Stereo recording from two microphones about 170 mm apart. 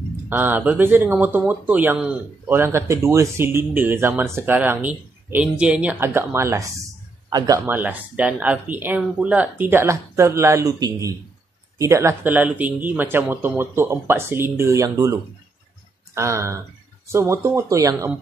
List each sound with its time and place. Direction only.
0.3 s speech: 10° right (ahead or behind)
16.2 s speech: 15° right (ahead or behind)